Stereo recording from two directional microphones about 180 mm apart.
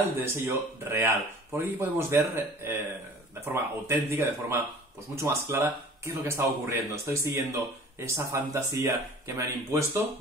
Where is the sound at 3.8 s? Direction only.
15° right (ahead or behind).